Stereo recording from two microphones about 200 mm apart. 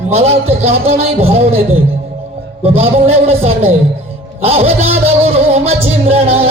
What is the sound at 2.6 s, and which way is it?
A man's voice, 30° right (ahead or behind).